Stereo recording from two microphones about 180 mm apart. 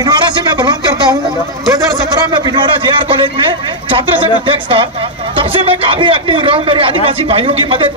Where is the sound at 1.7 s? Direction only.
20° right (ahead or behind).